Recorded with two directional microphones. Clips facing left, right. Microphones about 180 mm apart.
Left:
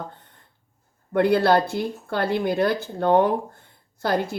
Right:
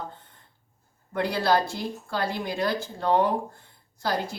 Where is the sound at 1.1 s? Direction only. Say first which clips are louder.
Left 6 dB; 55° left (ahead or behind).